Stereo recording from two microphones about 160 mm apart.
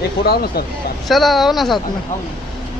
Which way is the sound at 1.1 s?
Centre (ahead or behind).